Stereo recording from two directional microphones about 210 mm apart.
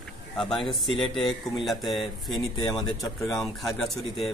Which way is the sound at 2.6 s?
15° left (ahead or behind).